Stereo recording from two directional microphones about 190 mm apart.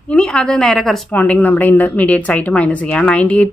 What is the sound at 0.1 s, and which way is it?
A woman's voice, 5° left (ahead or behind).